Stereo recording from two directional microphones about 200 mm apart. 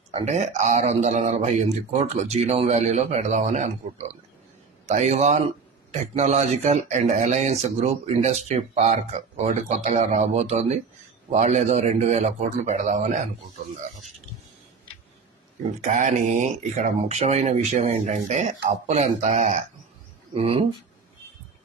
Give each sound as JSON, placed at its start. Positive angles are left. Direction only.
{"t": 0.1, "sound": "speech", "side_deg": -35}
{"t": 4.8, "sound": "speech", "side_deg": -35}
{"t": 15.8, "sound": "speech", "side_deg": -35}